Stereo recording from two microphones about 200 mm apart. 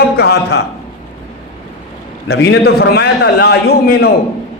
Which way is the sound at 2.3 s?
60° left (ahead or behind).